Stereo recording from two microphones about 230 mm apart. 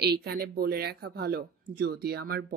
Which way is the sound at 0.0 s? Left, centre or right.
Right.